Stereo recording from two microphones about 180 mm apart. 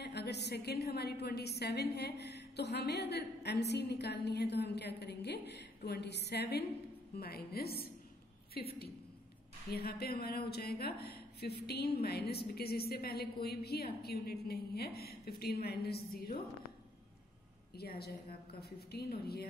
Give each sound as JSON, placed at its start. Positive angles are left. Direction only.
{"t": 0.0, "sound": "speech", "side_deg": 65}
{"t": 17.7, "sound": "speech", "side_deg": 60}